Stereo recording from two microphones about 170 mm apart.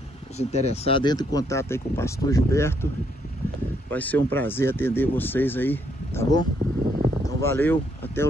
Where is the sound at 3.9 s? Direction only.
10° left (ahead or behind).